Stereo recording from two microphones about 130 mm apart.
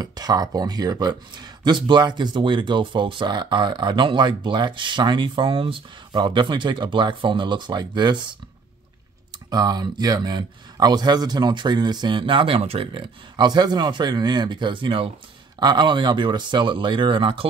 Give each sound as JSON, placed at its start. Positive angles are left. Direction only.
{"t": 0.0, "sound": "speech", "side_deg": -30}
{"t": 9.5, "sound": "speech", "side_deg": -30}